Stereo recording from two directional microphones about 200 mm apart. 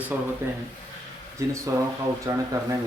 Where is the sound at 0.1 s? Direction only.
5° right (ahead or behind).